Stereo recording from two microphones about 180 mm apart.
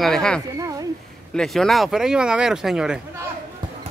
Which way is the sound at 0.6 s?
20° right (ahead or behind).